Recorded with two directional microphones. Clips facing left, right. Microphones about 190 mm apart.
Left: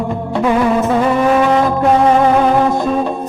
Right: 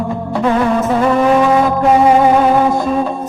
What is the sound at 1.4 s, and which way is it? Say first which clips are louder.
Music: right 1 dB; 5° right (ahead or behind).